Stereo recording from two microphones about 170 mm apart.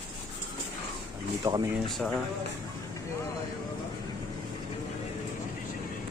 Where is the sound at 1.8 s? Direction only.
Centre (ahead or behind).